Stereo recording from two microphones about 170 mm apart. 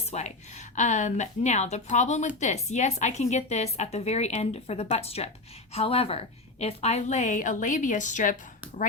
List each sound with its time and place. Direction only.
0.0 s a woman's voice: 40° left (ahead or behind)